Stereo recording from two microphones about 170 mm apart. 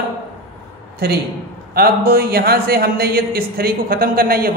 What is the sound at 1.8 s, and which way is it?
A man's voice, 65° right (ahead or behind).